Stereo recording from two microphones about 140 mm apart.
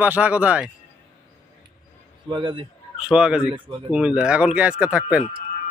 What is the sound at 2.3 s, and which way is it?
Speech, 35° right (ahead or behind).